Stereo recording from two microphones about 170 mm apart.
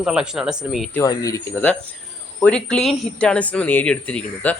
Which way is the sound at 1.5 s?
10° left (ahead or behind).